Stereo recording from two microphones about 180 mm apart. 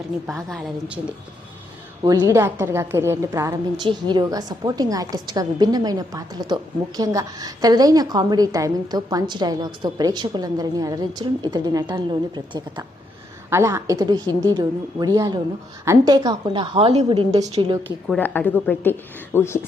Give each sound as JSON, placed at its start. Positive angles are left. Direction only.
{"t": 0.3, "sound": "a woman's voice", "side_deg": 0}
{"t": 2.0, "sound": "a woman's voice", "side_deg": -15}
{"t": 18.2, "sound": "a woman's voice", "side_deg": 10}